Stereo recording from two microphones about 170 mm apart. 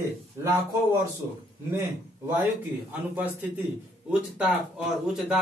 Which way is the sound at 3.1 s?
10° right (ahead or behind).